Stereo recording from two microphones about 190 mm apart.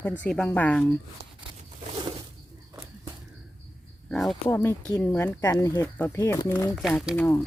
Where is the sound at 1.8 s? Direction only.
25° right (ahead or behind).